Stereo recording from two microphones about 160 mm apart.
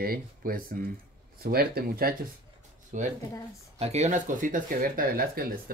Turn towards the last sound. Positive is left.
turn(degrees=-65)  # may be behind; listen again after turning